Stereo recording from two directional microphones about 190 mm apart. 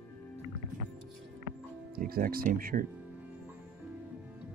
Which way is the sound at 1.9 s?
50° right (ahead or behind).